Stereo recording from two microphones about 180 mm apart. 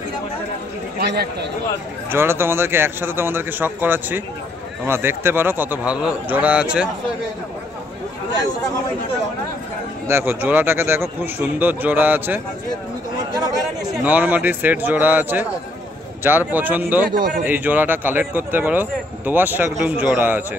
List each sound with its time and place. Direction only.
1.0 s a man's voice: 60° right (ahead or behind)
2.0 s speech: 15° right (ahead or behind)
10.0 s speech: 15° right (ahead or behind)
14.0 s speech: 10° right (ahead or behind)